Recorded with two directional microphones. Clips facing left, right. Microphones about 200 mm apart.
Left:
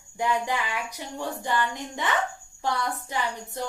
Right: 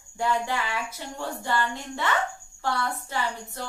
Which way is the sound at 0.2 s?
15° left (ahead or behind).